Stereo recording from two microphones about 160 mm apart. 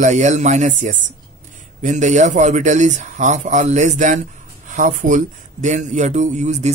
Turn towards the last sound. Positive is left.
turn(degrees=-45)  # may be behind; listen again after turning